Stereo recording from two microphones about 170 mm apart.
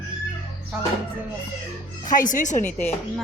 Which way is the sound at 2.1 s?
50° left (ahead or behind).